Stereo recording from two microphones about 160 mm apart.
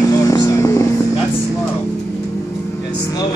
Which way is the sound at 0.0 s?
20° left (ahead or behind).